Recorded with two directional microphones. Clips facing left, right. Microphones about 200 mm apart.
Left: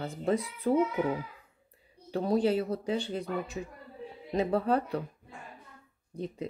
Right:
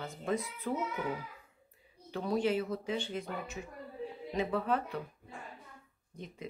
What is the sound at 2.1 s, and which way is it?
Speech, 35° left (ahead or behind).